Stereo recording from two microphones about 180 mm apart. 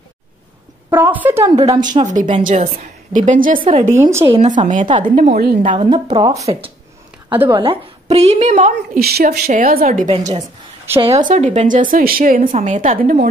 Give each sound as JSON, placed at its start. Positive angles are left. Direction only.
{"t": 0.8, "sound": "a woman's voice", "side_deg": -15}
{"t": 1.4, "sound": "speech", "side_deg": -25}
{"t": 2.0, "sound": "speech", "side_deg": -45}
{"t": 4.0, "sound": "a woman's voice", "side_deg": -15}
{"t": 4.3, "sound": "speech", "side_deg": -40}
{"t": 4.8, "sound": "speech", "side_deg": -25}
{"t": 5.1, "sound": "a woman's voice", "side_deg": -40}
{"t": 5.7, "sound": "speech", "side_deg": -25}
{"t": 7.2, "sound": "a woman's voice", "side_deg": -10}
{"t": 7.5, "sound": "a woman's voice", "side_deg": -30}
{"t": 9.0, "sound": "a woman's voice", "side_deg": -60}
{"t": 9.8, "sound": "a woman's voice", "side_deg": -35}
{"t": 11.2, "sound": "speech", "side_deg": -40}
{"t": 12.5, "sound": "speech", "side_deg": -40}